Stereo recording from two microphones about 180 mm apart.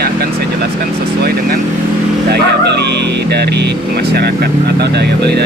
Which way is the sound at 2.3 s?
70° right (ahead or behind).